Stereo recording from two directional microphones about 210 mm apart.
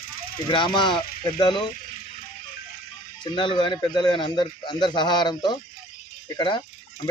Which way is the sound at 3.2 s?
20° left (ahead or behind).